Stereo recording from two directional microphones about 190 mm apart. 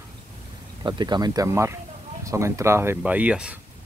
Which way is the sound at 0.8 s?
25° right (ahead or behind).